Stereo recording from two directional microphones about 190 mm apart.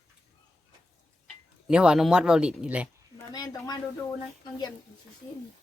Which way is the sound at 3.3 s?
20° left (ahead or behind).